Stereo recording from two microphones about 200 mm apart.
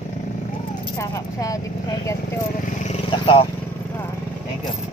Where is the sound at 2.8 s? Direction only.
30° left (ahead or behind).